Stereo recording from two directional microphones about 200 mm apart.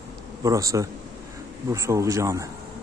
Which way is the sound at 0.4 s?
15° right (ahead or behind).